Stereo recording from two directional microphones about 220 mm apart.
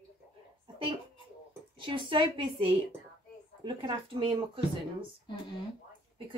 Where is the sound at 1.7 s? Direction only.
20° right (ahead or behind).